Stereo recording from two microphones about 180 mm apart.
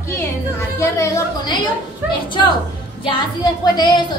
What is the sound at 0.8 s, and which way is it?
Speech, 15° left (ahead or behind).